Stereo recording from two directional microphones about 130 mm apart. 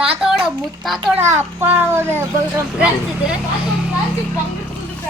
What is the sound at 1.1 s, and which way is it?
A child's voice, 20° right (ahead or behind).